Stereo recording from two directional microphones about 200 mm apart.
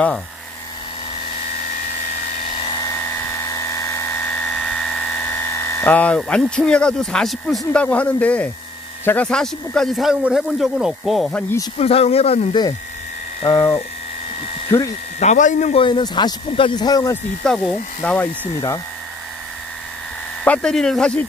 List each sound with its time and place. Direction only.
3.5 s dental drill: 15° left (ahead or behind)
9.0 s a man's voice: 5° left (ahead or behind)
11.8 s speech: 30° left (ahead or behind)
13.4 s hum: 15° left (ahead or behind)
15.1 s a man's voice: 35° left (ahead or behind); by 17.2 s 15° left (ahead or behind)
17.4 s a man's voice: centre (ahead or behind)
20.4 s a man's voice: 5° left (ahead or behind)